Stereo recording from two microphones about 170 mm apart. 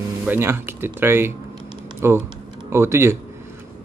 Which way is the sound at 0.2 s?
10° right (ahead or behind).